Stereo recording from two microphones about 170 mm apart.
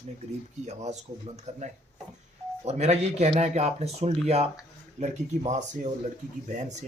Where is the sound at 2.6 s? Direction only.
40° right (ahead or behind).